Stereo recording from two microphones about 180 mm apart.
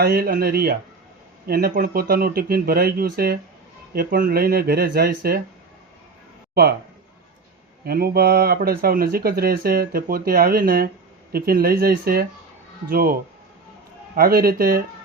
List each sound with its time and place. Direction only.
0.0 s speech: 55° right (ahead or behind)
6.5 s speech: 60° right (ahead or behind)
7.9 s speech: 60° right (ahead or behind)
14.2 s speech: 55° right (ahead or behind)